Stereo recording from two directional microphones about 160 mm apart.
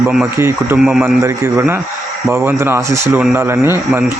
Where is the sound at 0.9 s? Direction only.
Centre (ahead or behind).